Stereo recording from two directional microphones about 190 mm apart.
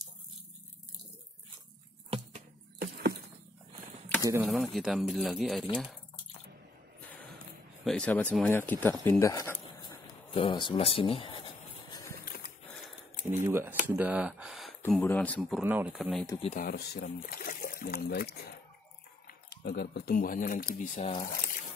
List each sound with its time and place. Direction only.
2.0 s a sound: 30° right (ahead or behind)
2.8 s a sound: 55° right (ahead or behind)
4.2 s speech: 15° right (ahead or behind)
4.5 s speech: centre (ahead or behind)
7.8 s speech: 5° left (ahead or behind)
9.8 s a sound: 25° left (ahead or behind)
12.3 s a sound: 50° left (ahead or behind)
13.3 s speech: 10° right (ahead or behind)
13.8 s gasp: 10° right (ahead or behind)
14.9 s speech: 5° left (ahead or behind)
15.6 s speech: 5° right (ahead or behind)
16.5 s speech: 55° left (ahead or behind)